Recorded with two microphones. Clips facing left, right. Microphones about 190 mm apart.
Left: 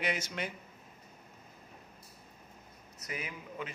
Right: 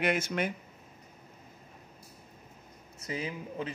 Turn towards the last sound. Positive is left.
turn(degrees=-30)  # may be behind; listen again after turning